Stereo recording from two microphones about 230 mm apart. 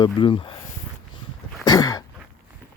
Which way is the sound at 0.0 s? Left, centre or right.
Left.